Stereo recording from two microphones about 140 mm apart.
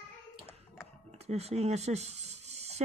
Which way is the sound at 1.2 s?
50° right (ahead or behind).